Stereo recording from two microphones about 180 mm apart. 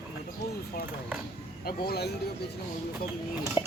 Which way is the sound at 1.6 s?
60° left (ahead or behind).